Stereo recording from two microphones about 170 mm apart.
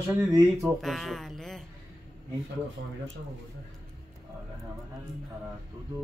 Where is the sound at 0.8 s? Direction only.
Centre (ahead or behind).